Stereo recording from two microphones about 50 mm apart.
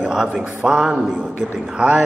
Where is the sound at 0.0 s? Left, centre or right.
Centre.